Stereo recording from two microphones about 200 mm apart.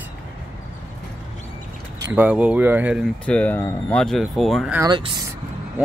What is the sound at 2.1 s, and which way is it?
Speech, 10° right (ahead or behind).